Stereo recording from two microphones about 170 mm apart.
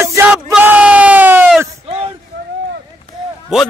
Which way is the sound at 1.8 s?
35° right (ahead or behind).